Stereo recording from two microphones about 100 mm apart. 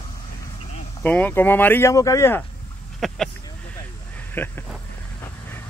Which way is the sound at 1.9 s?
35° left (ahead or behind).